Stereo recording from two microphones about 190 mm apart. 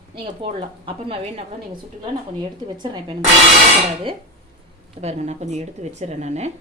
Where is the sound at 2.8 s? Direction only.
25° right (ahead or behind).